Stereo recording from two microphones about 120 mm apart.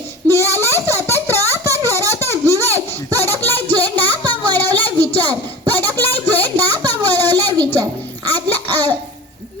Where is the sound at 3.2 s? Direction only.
20° left (ahead or behind).